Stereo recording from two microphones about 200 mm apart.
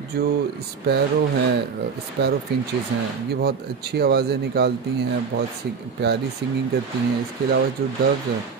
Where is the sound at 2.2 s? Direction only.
60° right (ahead or behind).